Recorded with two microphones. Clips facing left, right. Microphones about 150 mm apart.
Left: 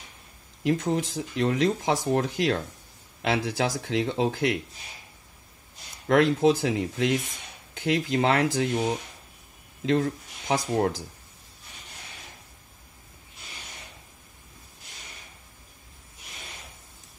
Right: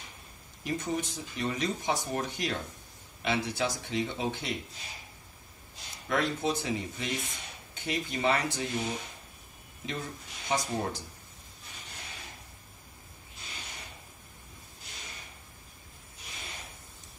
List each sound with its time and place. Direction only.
0.7 s speech: 90° left
6.0 s speech: 90° left
9.8 s speech: 90° left